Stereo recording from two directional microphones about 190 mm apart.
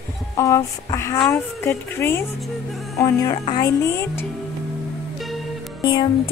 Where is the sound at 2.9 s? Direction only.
15° left (ahead or behind).